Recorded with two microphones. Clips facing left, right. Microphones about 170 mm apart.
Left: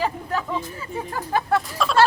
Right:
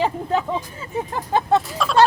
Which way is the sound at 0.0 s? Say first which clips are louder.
Right 4 dB; 25° right (ahead or behind).